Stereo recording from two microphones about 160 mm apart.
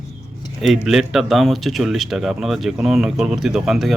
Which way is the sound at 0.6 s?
Centre (ahead or behind).